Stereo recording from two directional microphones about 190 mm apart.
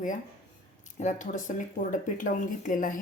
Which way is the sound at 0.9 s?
40° left (ahead or behind).